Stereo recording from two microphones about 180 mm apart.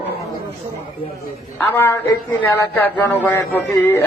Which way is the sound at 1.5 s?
10° left (ahead or behind).